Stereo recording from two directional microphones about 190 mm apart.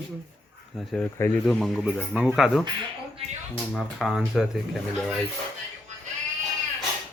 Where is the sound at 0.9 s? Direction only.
10° left (ahead or behind).